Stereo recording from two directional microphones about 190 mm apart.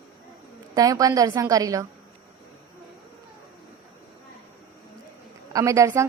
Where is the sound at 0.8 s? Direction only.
20° right (ahead or behind).